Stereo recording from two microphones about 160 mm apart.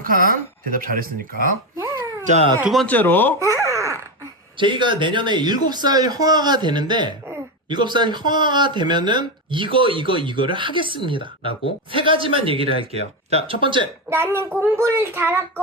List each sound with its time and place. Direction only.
0.0 s speech: 65° right (ahead or behind)
2.8 s speech: 10° left (ahead or behind)
3.4 s a sound: 20° right (ahead or behind)
4.5 s speech: 30° right (ahead or behind)
14.1 s a child's voice: 15° right (ahead or behind)